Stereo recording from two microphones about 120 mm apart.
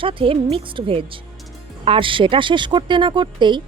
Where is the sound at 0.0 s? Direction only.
45° right (ahead or behind).